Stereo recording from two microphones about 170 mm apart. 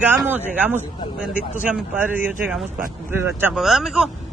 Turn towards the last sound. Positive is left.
turn(degrees=-5)  # may be behind; listen again after turning